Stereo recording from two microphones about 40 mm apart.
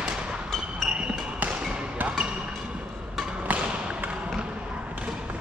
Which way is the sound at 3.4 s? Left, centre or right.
Right.